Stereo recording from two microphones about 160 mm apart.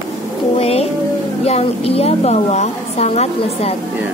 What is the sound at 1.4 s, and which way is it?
A woman's voice, 40° left (ahead or behind).